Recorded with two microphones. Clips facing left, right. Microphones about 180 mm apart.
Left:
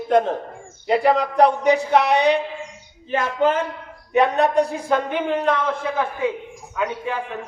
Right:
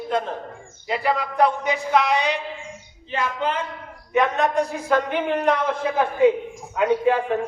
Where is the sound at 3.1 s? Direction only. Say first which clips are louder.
Left 5 dB; 45° left (ahead or behind).